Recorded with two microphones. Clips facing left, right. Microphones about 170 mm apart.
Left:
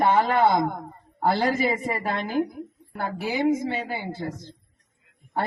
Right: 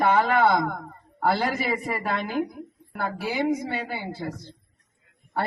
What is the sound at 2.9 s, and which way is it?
Speech, 20° left (ahead or behind).